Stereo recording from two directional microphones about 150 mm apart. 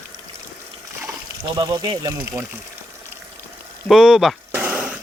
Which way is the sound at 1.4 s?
25° right (ahead or behind).